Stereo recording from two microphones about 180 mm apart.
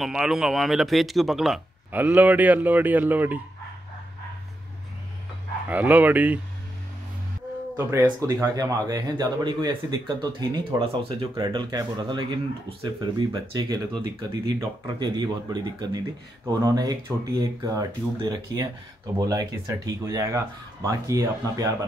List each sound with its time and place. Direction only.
0.0 s speech: 5° right (ahead or behind)
5.7 s speech: 10° right (ahead or behind)
7.7 s speech: 15° right (ahead or behind)